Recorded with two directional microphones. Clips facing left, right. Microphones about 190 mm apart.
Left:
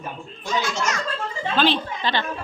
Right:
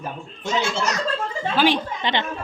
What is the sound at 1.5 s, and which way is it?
Speech, 15° right (ahead or behind).